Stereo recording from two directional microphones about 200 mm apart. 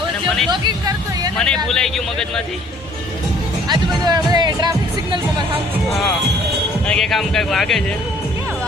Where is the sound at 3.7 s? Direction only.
20° right (ahead or behind).